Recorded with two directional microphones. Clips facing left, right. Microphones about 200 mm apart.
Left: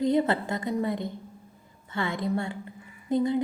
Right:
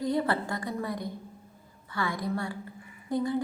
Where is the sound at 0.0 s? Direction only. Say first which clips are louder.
Left 4 dB; 20° left (ahead or behind).